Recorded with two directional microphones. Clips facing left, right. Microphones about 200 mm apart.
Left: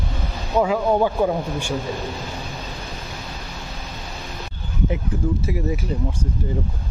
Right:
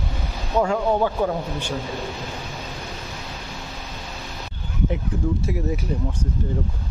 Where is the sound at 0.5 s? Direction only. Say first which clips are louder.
Left 2 dB; 5° left (ahead or behind).